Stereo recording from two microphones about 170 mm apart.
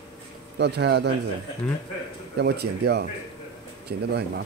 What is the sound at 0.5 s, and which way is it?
Speech, 80° right.